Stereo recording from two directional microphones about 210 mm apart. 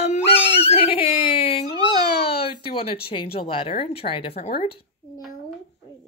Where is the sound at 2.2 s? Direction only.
25° left (ahead or behind).